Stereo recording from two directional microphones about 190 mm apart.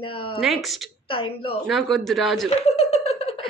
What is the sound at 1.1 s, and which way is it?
Speech, 30° left (ahead or behind).